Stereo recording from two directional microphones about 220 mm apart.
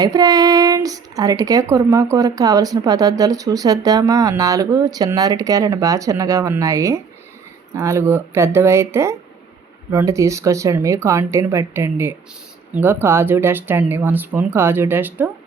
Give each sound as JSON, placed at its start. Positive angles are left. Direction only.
{"t": 0.0, "sound": "speech", "side_deg": -15}